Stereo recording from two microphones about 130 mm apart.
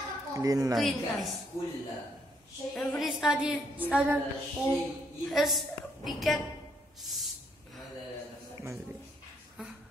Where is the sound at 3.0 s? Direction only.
5° right (ahead or behind).